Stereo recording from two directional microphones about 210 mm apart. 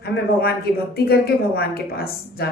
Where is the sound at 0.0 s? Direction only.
45° left (ahead or behind).